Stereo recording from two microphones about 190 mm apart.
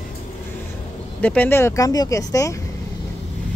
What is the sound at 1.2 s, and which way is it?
Speech, 10° left (ahead or behind).